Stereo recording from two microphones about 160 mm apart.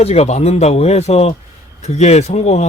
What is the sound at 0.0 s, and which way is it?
Speech, 40° left (ahead or behind).